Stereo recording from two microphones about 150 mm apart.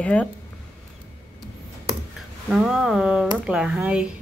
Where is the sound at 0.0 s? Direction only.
10° left (ahead or behind).